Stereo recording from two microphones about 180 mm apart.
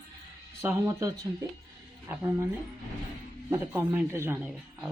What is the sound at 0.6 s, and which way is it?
A man's voice, 15° right (ahead or behind).